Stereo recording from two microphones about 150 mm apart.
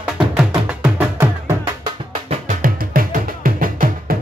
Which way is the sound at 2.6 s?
65° right (ahead or behind).